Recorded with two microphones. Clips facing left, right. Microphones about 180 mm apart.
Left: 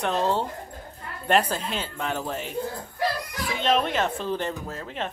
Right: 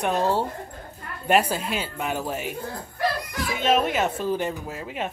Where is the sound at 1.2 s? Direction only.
10° right (ahead or behind).